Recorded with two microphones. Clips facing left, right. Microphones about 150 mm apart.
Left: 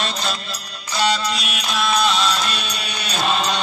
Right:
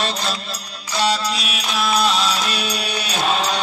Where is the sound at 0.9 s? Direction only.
Centre (ahead or behind).